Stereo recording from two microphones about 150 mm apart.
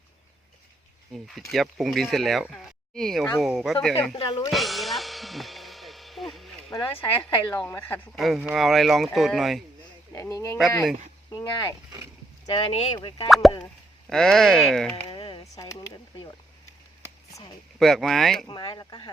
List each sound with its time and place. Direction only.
1.1 s speech: centre (ahead or behind)
4.1 s speech: 30° left (ahead or behind)
4.5 s music: centre (ahead or behind)
6.7 s speech: 35° left (ahead or behind)
7.3 s speech: 10° left (ahead or behind)
8.1 s speech: centre (ahead or behind)
10.2 s speech: 20° left (ahead or behind)
14.1 s speech: 5° left (ahead or behind)
15.1 s a sound: 35° left (ahead or behind)
15.5 s speech: 25° left (ahead or behind)
17.7 s speech: centre (ahead or behind)
18.4 s speech: 30° left (ahead or behind)